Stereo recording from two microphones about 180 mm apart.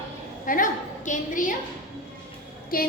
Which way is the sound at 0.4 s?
50° left (ahead or behind).